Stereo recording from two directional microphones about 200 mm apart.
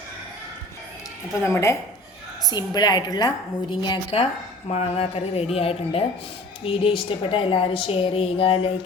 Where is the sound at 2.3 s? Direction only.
20° left (ahead or behind).